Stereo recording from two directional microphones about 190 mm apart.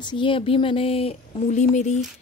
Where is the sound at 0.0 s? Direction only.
25° left (ahead or behind).